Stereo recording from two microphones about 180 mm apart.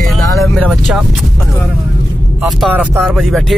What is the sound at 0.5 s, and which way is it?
Speech, centre (ahead or behind).